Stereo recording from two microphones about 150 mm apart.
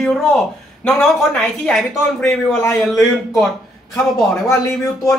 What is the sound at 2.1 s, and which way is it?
Speech, 15° left (ahead or behind).